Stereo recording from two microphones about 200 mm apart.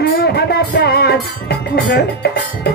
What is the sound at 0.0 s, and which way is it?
Music, 50° left (ahead or behind).